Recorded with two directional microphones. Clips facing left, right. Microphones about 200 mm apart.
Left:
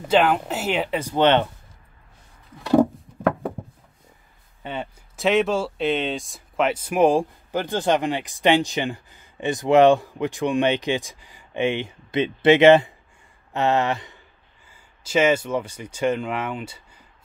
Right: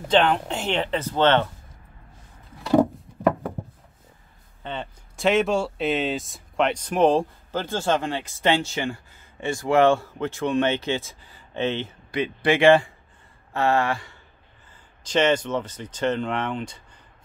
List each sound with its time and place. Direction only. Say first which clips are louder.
0.1 s speech: left 1 dB; 5° left (ahead or behind)
2.6 s wood: left 2 dB; 10° left (ahead or behind)
4.6 s speech: left 2 dB; 5° left (ahead or behind)
14.7 s speech: left 2 dB; 10° left (ahead or behind)